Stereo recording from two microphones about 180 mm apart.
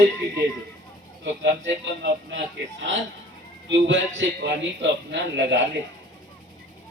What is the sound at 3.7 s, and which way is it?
A man's voice, 90° right.